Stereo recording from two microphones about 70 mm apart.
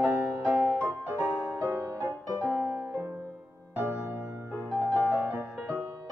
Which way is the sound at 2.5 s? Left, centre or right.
Centre.